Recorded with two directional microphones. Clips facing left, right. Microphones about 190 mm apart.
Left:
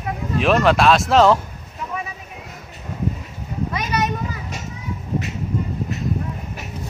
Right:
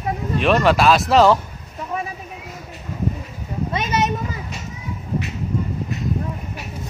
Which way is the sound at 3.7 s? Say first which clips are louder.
Right 2 dB; 25° right (ahead or behind).